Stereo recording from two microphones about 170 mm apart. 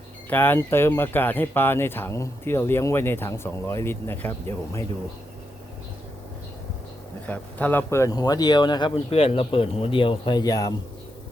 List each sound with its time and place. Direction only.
0.3 s speech: 10° left (ahead or behind)
7.3 s speech: 10° left (ahead or behind)